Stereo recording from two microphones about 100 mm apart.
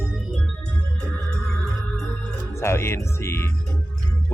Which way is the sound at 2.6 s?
25° left (ahead or behind).